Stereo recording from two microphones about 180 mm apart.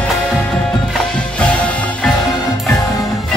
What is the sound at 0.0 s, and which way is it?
Music, centre (ahead or behind).